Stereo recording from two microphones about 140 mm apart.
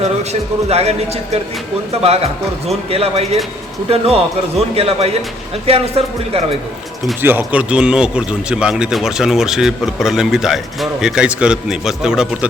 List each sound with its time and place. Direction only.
0.7 s speech: 50° right (ahead or behind)
2.9 s speech: 45° right (ahead or behind)
7.2 s speech: 15° right (ahead or behind)